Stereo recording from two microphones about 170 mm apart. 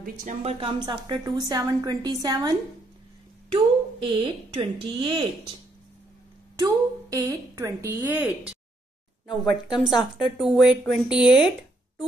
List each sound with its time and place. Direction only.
0.0 s speech: 45° right (ahead or behind); by 2.5 s 20° right (ahead or behind)
3.5 s speech: 30° right (ahead or behind)
6.5 s a woman's voice: 20° right (ahead or behind)
9.8 s a woman's voice: centre (ahead or behind)